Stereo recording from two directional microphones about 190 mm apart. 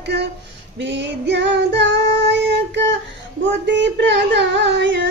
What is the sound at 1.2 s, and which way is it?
Child singing, 65° right (ahead or behind).